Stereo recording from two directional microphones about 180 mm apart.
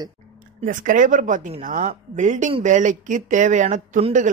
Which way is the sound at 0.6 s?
45° right (ahead or behind).